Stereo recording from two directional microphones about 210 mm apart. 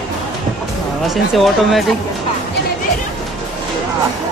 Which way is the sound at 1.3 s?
Centre (ahead or behind).